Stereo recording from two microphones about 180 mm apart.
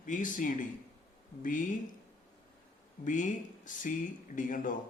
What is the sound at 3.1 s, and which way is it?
Speech, 45° left (ahead or behind).